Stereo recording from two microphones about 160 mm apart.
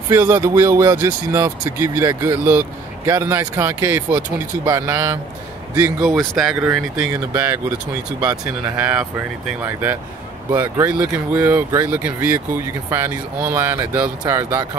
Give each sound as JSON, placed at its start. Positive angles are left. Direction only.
{"t": 0.1, "sound": "speech", "side_deg": -15}
{"t": 6.0, "sound": "speech", "side_deg": 0}